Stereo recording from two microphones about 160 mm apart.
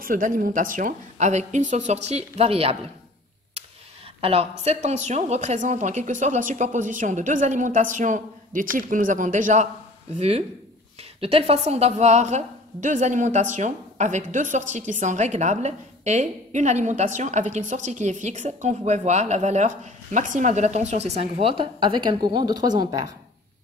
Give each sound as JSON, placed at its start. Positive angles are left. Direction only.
{"t": 0.0, "sound": "a woman's voice", "side_deg": -60}
{"t": 4.2, "sound": "a woman's voice", "side_deg": -40}